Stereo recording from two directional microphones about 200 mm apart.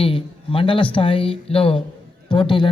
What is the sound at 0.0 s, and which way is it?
A man's voice, 25° left (ahead or behind).